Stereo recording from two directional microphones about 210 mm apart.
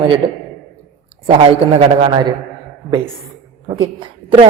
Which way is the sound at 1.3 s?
25° right (ahead or behind).